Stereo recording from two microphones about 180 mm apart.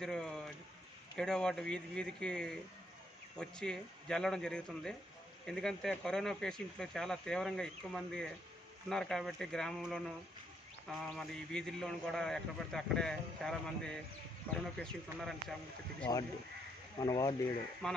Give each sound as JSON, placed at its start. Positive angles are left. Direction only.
{"t": 0.0, "sound": "a man's voice", "side_deg": 5}
{"t": 17.0, "sound": "speech", "side_deg": 20}
{"t": 17.8, "sound": "a man's voice", "side_deg": 5}